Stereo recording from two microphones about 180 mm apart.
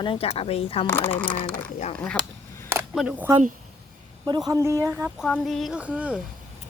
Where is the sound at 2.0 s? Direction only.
5° left (ahead or behind).